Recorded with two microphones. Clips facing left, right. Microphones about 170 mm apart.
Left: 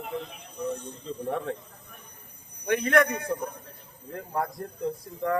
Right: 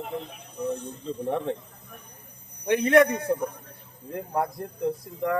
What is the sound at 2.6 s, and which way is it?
A man's voice, 25° right (ahead or behind).